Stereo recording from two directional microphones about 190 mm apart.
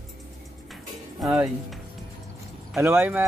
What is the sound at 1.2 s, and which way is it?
Speech, 5° right (ahead or behind).